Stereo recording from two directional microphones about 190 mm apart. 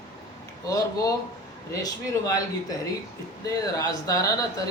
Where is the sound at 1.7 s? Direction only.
20° left (ahead or behind).